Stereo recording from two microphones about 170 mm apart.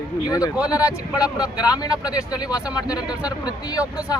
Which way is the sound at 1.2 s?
5° right (ahead or behind).